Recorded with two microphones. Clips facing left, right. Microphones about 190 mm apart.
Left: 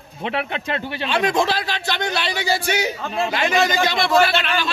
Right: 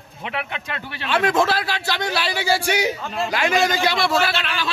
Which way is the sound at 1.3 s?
5° right (ahead or behind).